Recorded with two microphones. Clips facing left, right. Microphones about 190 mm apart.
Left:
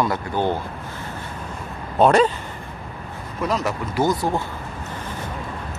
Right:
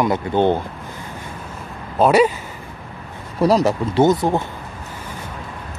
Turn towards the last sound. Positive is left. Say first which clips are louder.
# right 5 dB
turn(degrees=-25)  # may be behind; listen again after turning